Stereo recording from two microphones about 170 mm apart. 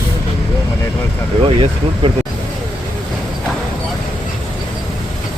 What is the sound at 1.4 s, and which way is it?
Speech, 35° right (ahead or behind).